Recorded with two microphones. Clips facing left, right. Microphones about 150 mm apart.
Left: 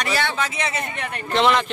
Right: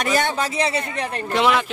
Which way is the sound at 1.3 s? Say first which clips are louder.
Left 1 dB; 5° right (ahead or behind).